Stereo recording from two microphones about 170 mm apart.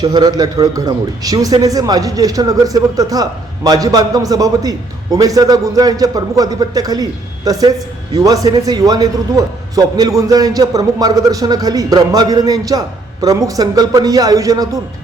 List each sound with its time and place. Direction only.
0.0 s a man's voice: 25° right (ahead or behind)